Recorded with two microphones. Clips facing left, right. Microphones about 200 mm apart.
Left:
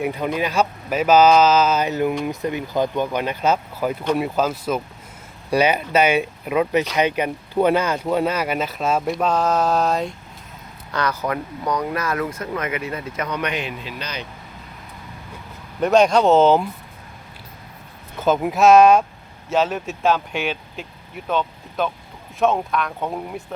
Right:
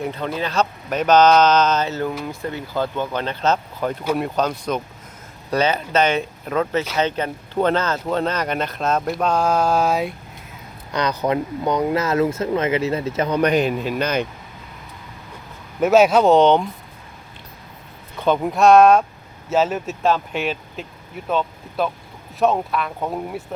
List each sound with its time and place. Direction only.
0.0 s speech: 10° left (ahead or behind)
10.9 s speech: 20° right (ahead or behind); by 14.3 s 50° right (ahead or behind)
15.8 s speech: 5° right (ahead or behind)
18.2 s speech: 5° left (ahead or behind)